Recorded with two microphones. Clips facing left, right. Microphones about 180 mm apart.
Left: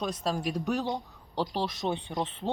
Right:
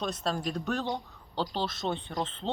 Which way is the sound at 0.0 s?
10° left (ahead or behind).